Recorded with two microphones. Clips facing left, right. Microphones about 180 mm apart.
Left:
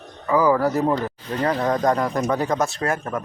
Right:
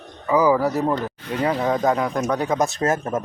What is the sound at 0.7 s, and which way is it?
Speech, 5° left (ahead or behind).